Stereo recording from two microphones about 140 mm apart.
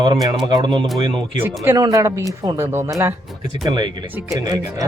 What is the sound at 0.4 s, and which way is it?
Speech, 35° right (ahead or behind).